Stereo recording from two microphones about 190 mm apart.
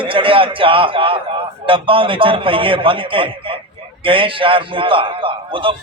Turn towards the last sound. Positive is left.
turn(degrees=-25)  # may be behind; listen again after turning